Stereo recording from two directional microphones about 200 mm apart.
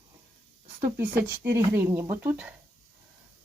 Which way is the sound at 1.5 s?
15° right (ahead or behind).